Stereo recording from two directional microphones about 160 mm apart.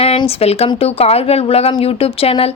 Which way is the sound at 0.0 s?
35° left (ahead or behind).